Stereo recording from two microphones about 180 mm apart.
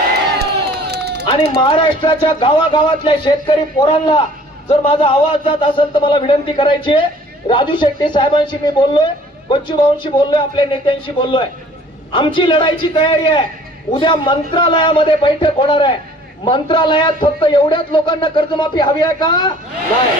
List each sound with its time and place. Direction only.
0.3 s crowd: 65° right (ahead or behind)
1.3 s speech: 30° left (ahead or behind)